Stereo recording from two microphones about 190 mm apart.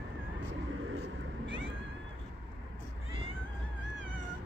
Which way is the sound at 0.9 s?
75° right (ahead or behind).